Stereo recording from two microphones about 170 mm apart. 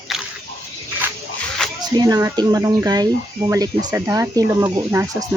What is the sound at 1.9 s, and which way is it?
Speech, 20° right (ahead or behind).